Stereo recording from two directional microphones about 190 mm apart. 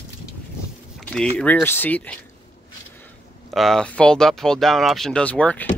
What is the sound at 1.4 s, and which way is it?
Speech, 5° left (ahead or behind).